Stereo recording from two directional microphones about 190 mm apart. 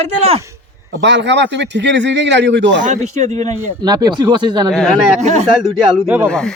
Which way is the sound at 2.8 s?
40° right (ahead or behind).